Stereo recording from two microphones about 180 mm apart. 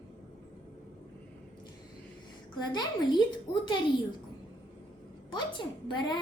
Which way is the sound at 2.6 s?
25° left (ahead or behind).